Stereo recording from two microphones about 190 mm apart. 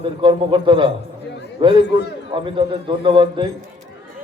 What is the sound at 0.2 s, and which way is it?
Speech, 25° right (ahead or behind).